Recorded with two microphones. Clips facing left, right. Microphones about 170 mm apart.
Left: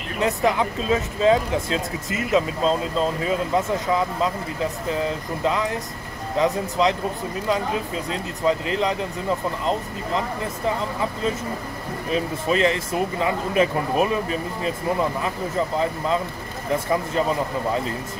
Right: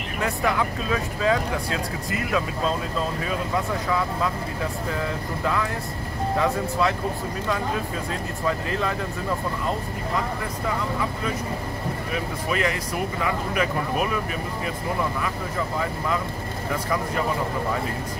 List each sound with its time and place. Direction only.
0.2 s speech: 20° left (ahead or behind)
12.1 s speech: 25° left (ahead or behind)